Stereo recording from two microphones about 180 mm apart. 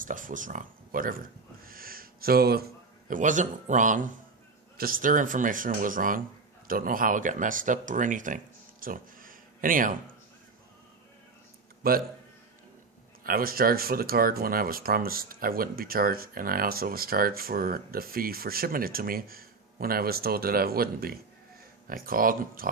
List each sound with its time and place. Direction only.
0.0 s speech: 45° right (ahead or behind)
1.6 s a sound: 55° right (ahead or behind)
3.1 s speech: 45° right (ahead or behind)
8.8 s a sound: 50° right (ahead or behind)
11.8 s a man's voice: 55° right (ahead or behind)
13.2 s speech: 55° right (ahead or behind)